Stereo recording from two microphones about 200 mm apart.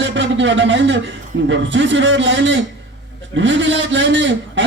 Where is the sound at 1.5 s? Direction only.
65° right (ahead or behind).